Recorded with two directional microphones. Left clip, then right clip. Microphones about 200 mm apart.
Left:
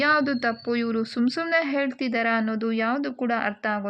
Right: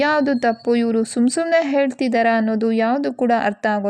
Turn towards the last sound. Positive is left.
turn(degrees=-45)  # may be behind; listen again after turning